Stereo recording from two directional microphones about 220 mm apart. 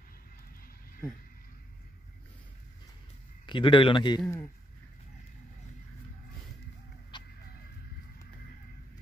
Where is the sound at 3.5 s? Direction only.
20° left (ahead or behind).